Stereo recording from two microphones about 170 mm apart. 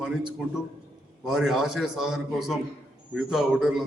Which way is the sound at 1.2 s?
Centre (ahead or behind).